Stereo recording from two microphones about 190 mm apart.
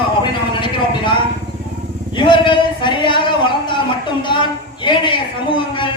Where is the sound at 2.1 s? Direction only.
25° left (ahead or behind).